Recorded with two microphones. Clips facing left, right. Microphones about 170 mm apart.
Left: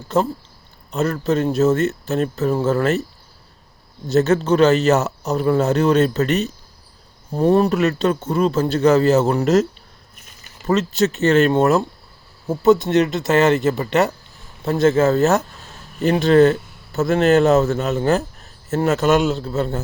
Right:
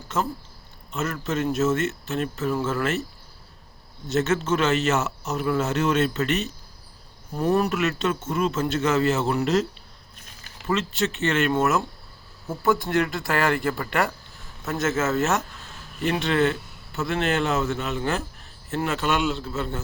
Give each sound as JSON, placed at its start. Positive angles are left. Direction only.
{"t": 0.1, "sound": "speech", "side_deg": 35}
{"t": 4.0, "sound": "speech", "side_deg": 35}
{"t": 10.7, "sound": "speech", "side_deg": 40}
{"t": 12.5, "sound": "speech", "side_deg": 25}